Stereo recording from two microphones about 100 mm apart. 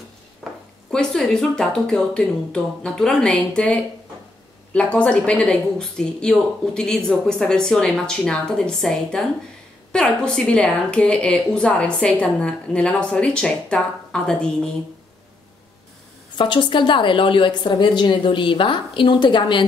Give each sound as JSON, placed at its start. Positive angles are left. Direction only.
{"t": 0.4, "sound": "a sound", "side_deg": 0}
{"t": 0.9, "sound": "a woman's voice", "side_deg": 10}
{"t": 4.7, "sound": "a woman's voice", "side_deg": 10}
{"t": 16.3, "sound": "a woman's voice", "side_deg": 50}